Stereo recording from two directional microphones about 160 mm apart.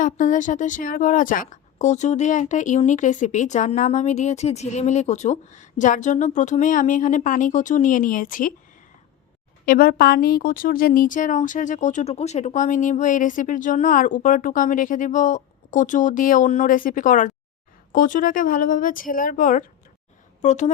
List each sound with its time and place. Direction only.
0.0 s a woman's voice: 50° left (ahead or behind)
9.6 s a woman's voice: 65° left (ahead or behind); by 20.7 s 45° left (ahead or behind)